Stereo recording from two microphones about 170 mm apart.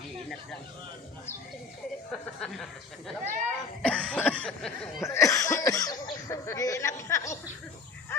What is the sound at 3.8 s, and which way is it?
Cough, 5° left (ahead or behind).